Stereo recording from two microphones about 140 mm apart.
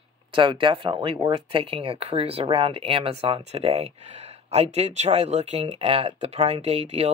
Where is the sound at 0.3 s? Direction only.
35° right (ahead or behind).